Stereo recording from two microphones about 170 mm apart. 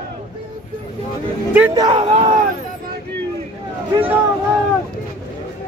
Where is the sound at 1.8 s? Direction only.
30° right (ahead or behind).